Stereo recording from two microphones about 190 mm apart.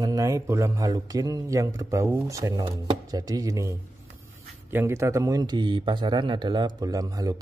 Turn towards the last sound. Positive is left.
turn(degrees=-20)  # may be behind; listen again after turning